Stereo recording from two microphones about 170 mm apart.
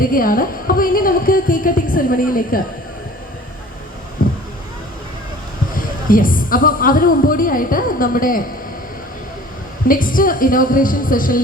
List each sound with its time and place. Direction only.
0.0 s a sound: 55° left (ahead or behind)
4.2 s vehicle: 55° left (ahead or behind)
5.7 s speech: 55° left (ahead or behind)
9.9 s speech: 55° left (ahead or behind)